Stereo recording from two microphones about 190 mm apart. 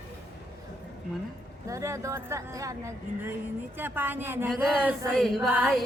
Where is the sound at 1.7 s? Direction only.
15° right (ahead or behind).